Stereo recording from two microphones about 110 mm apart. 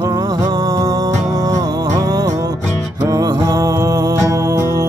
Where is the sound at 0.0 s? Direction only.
35° right (ahead or behind).